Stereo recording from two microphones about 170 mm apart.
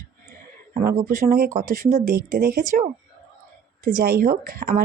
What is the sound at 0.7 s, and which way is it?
Speech, 55° right (ahead or behind).